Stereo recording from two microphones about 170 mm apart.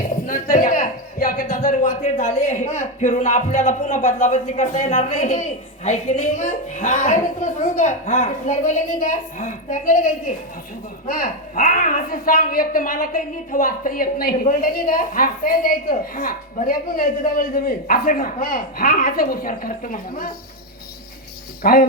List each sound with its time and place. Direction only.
0.0 s a sound: 50° left (ahead or behind)
1.8 s a man's voice: 40° left (ahead or behind); by 20.3 s 55° left (ahead or behind)
21.6 s speech: 60° left (ahead or behind)